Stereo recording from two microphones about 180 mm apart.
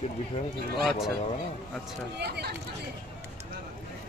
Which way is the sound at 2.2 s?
65° right (ahead or behind).